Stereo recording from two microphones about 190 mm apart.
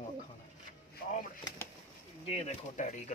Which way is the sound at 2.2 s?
35° left (ahead or behind).